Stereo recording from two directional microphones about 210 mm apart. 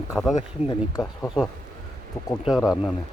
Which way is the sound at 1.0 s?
5° right (ahead or behind).